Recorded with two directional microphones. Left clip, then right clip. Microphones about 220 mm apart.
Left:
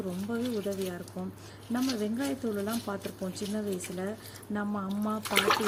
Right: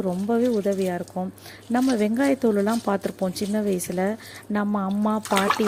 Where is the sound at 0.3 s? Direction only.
35° right (ahead or behind).